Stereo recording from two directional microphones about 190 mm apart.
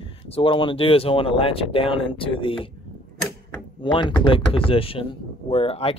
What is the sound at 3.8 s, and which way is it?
Speech, 25° left (ahead or behind).